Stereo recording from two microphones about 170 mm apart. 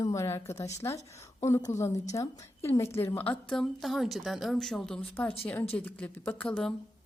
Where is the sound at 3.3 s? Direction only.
Centre (ahead or behind).